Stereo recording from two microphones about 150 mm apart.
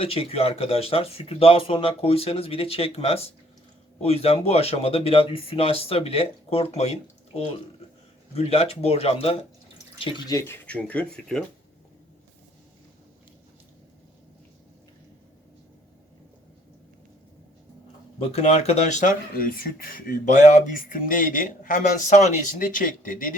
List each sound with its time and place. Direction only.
0.0 s speech: 40° left (ahead or behind)
10.3 s speech: 15° left (ahead or behind)
18.2 s speech: 45° left (ahead or behind); by 23.3 s 65° left (ahead or behind)